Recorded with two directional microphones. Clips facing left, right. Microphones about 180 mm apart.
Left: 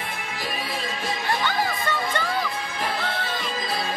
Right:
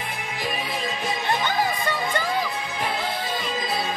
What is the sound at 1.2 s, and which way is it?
Music, 15° right (ahead or behind).